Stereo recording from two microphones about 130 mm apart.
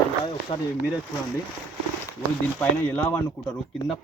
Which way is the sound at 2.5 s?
15° left (ahead or behind).